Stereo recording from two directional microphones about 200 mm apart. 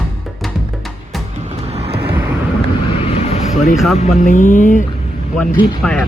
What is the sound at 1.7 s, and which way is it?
Vehicle, 30° right (ahead or behind).